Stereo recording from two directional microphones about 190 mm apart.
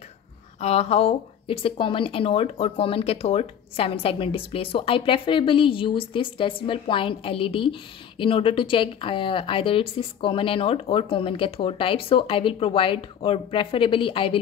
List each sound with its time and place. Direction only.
0.6 s a woman's voice: 35° left (ahead or behind)